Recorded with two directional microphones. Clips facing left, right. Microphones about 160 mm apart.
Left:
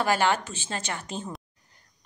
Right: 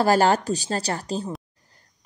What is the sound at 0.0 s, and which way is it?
A woman's voice, 40° right (ahead or behind).